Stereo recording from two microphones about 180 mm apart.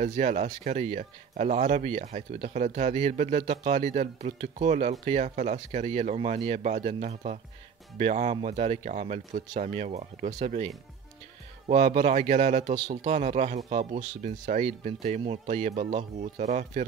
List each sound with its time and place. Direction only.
0.0 s speech: 40° right (ahead or behind)
12.7 s speech: 20° right (ahead or behind)
13.0 s speech: 40° right (ahead or behind)